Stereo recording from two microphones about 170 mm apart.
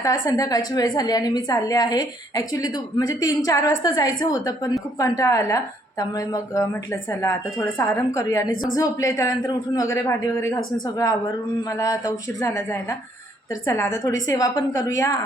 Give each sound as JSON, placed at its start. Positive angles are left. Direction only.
{"t": 0.0, "sound": "a woman's voice", "side_deg": 20}